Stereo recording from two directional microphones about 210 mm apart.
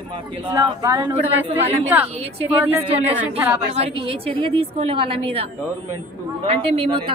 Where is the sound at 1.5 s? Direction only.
30° right (ahead or behind).